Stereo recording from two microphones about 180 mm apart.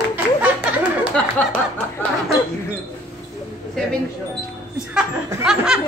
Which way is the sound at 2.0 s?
10° left (ahead or behind).